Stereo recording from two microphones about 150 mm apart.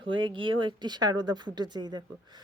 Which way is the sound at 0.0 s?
35° right (ahead or behind).